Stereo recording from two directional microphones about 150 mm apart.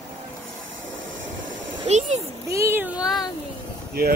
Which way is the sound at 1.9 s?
50° right (ahead or behind).